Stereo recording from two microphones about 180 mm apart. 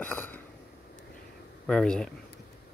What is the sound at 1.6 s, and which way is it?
Speech, 5° left (ahead or behind).